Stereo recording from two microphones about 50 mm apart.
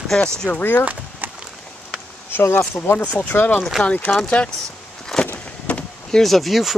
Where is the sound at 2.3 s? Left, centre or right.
Left.